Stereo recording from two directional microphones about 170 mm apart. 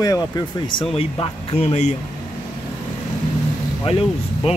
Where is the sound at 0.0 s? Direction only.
20° left (ahead or behind); by 2.0 s 40° left (ahead or behind).